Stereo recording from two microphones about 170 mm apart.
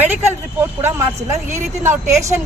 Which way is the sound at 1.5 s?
15° right (ahead or behind).